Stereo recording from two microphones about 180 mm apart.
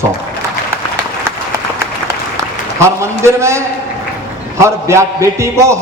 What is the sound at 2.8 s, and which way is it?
A man's voice, 15° right (ahead or behind).